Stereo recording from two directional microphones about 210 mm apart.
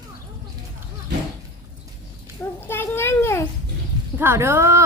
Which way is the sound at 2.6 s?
10° left (ahead or behind).